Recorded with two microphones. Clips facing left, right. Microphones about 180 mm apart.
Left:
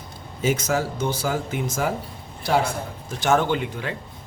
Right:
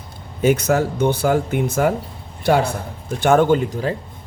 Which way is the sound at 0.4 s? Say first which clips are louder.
Right 6 dB; 60° right (ahead or behind).